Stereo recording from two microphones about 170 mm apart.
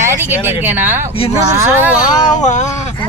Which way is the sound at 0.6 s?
10° right (ahead or behind).